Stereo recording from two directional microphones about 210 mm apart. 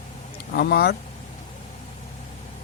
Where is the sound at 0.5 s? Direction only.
50° left (ahead or behind).